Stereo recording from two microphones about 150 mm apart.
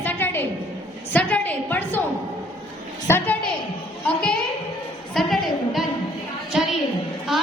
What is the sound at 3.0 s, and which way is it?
Speech, 15° left (ahead or behind).